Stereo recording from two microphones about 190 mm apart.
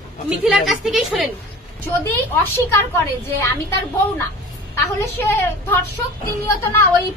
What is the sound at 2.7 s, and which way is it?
Speech, 10° left (ahead or behind).